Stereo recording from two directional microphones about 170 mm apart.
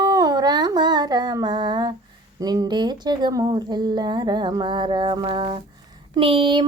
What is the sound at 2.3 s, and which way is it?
Female singing, 20° right (ahead or behind).